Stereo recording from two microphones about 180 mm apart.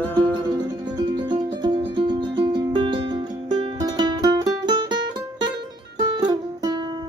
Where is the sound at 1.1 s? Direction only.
25° right (ahead or behind).